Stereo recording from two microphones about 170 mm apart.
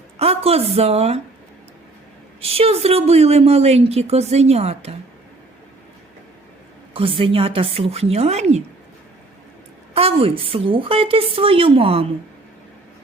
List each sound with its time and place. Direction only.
0.2 s a woman's voice: 35° right (ahead or behind)
2.4 s a woman's voice: 35° right (ahead or behind)
6.9 s a woman's voice: 30° right (ahead or behind)
9.9 s a woman's voice: 35° right (ahead or behind)